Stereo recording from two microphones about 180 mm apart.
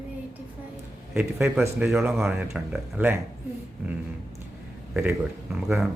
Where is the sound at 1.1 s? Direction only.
10° right (ahead or behind).